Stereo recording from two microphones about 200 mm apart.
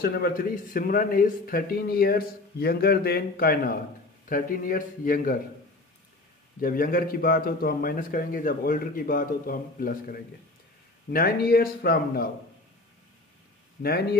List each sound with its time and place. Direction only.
0.0 s speech: 50° left (ahead or behind)
6.6 s speech: 45° left (ahead or behind)